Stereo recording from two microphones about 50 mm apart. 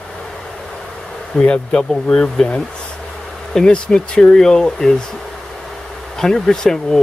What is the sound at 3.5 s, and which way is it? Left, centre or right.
Speech, centre.